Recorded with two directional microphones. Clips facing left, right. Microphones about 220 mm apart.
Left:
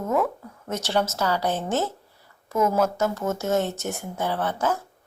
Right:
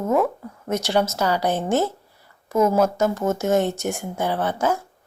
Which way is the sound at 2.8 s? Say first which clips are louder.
Right 4 dB; 15° right (ahead or behind).